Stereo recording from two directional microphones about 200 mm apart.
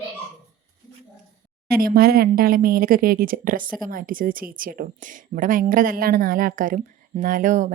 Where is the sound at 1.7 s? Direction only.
50° right (ahead or behind).